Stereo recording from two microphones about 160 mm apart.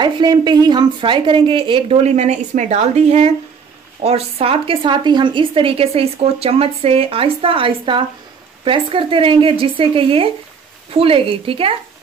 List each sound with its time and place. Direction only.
0.0 s speech: 30° right (ahead or behind)